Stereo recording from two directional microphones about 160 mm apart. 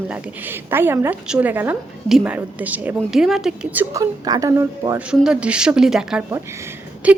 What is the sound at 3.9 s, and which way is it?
A woman's voice, 25° right (ahead or behind).